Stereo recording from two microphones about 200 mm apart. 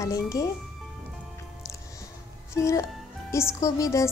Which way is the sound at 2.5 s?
15° left (ahead or behind).